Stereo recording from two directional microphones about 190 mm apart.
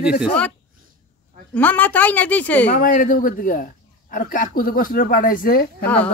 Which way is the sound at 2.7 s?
45° left (ahead or behind).